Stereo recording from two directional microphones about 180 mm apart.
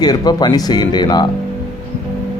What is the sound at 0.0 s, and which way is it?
Speech, 20° left (ahead or behind).